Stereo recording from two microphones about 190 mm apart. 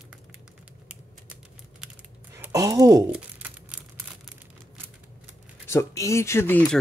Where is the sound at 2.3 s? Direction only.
15° right (ahead or behind).